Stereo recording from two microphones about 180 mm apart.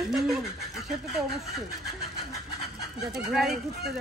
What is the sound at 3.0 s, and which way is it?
Speech, centre (ahead or behind).